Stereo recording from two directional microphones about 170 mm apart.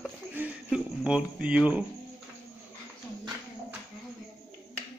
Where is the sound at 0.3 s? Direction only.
10° right (ahead or behind).